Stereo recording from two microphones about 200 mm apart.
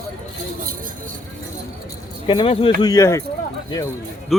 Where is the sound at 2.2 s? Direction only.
25° left (ahead or behind).